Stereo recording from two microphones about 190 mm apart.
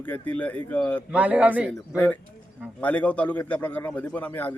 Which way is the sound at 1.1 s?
5° right (ahead or behind).